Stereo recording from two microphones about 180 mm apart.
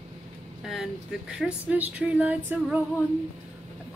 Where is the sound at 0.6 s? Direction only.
Centre (ahead or behind).